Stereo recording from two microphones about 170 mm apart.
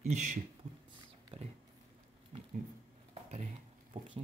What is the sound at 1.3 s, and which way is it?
Speech, 25° right (ahead or behind).